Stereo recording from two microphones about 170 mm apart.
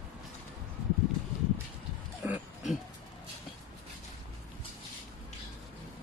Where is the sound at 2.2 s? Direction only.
10° right (ahead or behind).